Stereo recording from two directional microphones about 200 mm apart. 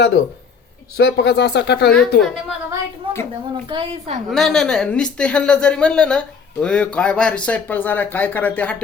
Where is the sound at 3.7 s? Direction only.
25° right (ahead or behind).